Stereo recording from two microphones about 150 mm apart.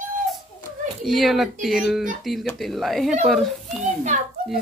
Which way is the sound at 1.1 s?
Centre (ahead or behind).